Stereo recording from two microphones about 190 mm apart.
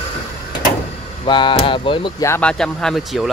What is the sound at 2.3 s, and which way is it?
Speech, 5° left (ahead or behind).